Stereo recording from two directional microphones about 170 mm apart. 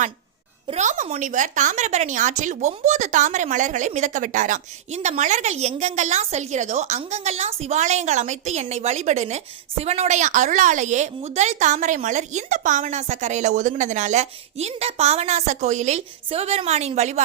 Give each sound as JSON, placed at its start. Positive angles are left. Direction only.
{"t": 0.7, "sound": "a woman's voice", "side_deg": -45}